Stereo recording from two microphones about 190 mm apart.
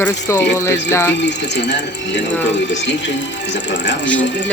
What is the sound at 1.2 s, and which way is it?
Mechanisms, 65° left (ahead or behind).